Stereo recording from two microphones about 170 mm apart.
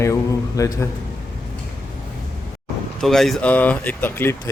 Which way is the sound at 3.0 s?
Centre (ahead or behind).